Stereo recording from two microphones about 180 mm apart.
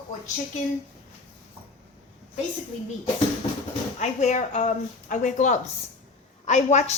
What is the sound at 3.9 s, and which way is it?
A woman's voice, 40° left (ahead or behind).